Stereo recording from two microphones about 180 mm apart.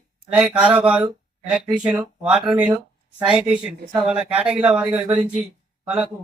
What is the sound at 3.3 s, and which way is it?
Speech, 5° right (ahead or behind).